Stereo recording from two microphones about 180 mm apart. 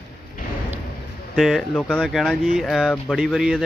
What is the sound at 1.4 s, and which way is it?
A man's voice, centre (ahead or behind).